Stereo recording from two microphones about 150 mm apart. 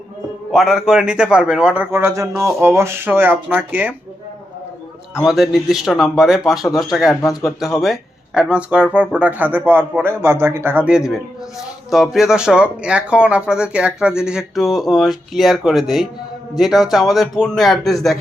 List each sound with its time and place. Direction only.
0.5 s speech: centre (ahead or behind)
5.2 s speech: centre (ahead or behind)
7.2 s speech: 20° left (ahead or behind)
7.6 s speech: centre (ahead or behind)